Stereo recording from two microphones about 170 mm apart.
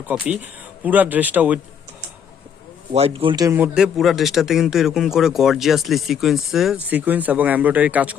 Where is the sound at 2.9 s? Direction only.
35° right (ahead or behind).